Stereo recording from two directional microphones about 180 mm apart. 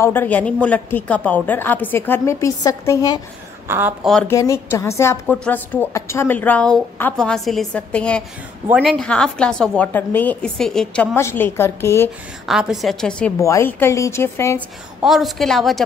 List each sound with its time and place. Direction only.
0.0 s a woman's voice: 10° left (ahead or behind)
3.6 s speech: 15° right (ahead or behind)
4.0 s a woman's voice: 5° left (ahead or behind)
4.3 s a woman's voice: 15° left (ahead or behind)
11.1 s a woman's voice: 15° left (ahead or behind)
12.4 s a woman's voice: centre (ahead or behind)
13.4 s a woman's voice: 15° left (ahead or behind)
15.0 s a woman's voice: centre (ahead or behind)